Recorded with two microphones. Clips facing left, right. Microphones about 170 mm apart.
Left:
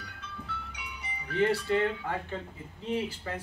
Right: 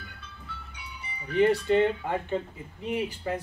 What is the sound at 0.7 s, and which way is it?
Music, 90° left.